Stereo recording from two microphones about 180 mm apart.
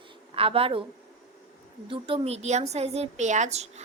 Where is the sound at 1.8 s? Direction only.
30° right (ahead or behind).